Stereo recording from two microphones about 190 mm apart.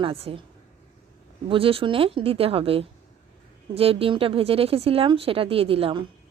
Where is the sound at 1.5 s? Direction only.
30° right (ahead or behind).